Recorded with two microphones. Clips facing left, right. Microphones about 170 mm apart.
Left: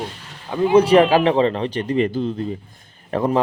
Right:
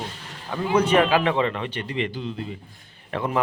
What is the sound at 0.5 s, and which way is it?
Speech, 25° left (ahead or behind).